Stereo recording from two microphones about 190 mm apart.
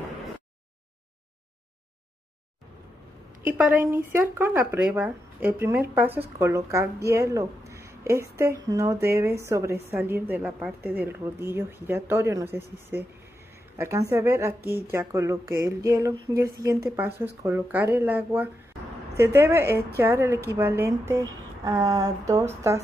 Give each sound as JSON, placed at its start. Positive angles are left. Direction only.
{"t": 3.4, "sound": "a woman's voice", "side_deg": -10}